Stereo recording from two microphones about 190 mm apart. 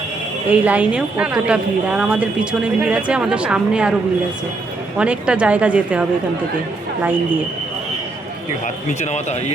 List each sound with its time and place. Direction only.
0.5 s a woman's voice: 5° right (ahead or behind)
4.9 s a woman's voice: 5° right (ahead or behind)
8.9 s speech: 40° left (ahead or behind)